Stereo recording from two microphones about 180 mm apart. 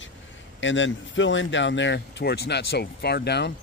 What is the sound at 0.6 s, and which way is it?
A man's voice, 90° left.